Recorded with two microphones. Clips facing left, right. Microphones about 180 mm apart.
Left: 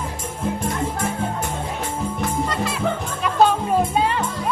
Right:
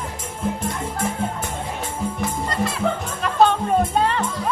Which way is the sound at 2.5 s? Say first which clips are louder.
Right 1 dB; centre (ahead or behind).